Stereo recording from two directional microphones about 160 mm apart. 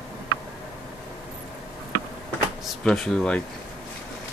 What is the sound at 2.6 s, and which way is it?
Speech, centre (ahead or behind).